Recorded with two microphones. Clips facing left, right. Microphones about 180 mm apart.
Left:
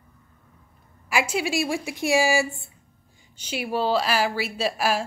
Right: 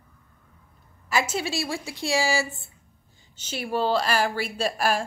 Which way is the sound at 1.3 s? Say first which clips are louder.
Left 4 dB; 15° left (ahead or behind).